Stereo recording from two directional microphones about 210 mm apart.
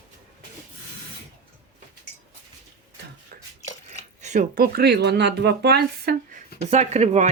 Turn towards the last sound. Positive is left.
turn(degrees=-30)  # may be behind; listen again after turning